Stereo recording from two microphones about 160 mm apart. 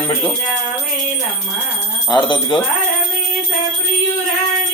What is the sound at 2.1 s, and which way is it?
Speech, 30° left (ahead or behind).